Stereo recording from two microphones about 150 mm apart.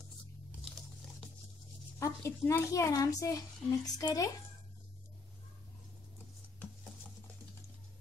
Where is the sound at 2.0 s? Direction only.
20° left (ahead or behind).